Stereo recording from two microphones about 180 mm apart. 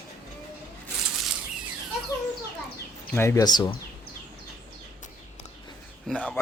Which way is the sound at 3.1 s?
15° left (ahead or behind).